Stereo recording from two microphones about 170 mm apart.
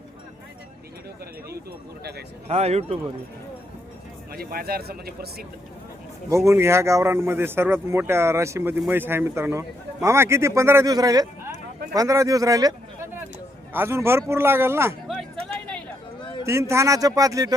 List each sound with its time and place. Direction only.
2.5 s speech: 40° right (ahead or behind)
4.3 s speech: 65° right (ahead or behind)
6.3 s speech: 15° right (ahead or behind)
15.0 s a sound: centre (ahead or behind)
16.5 s speech: 15° right (ahead or behind)